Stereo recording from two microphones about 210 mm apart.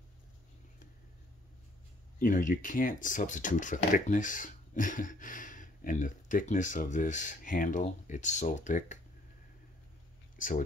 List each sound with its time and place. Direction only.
2.1 s speech: 40° left (ahead or behind)
10.3 s speech: 40° left (ahead or behind)